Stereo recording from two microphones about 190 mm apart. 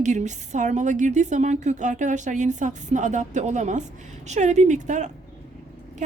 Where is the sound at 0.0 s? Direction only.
40° right (ahead or behind).